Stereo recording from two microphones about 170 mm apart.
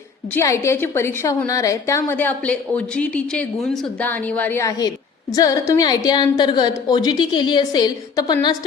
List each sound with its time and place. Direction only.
0.3 s a woman's voice: 15° left (ahead or behind)